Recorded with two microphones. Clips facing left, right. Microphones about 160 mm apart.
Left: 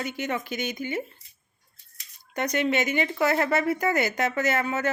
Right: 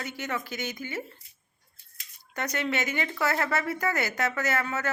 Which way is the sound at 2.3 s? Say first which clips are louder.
Left 5 dB; 20° left (ahead or behind).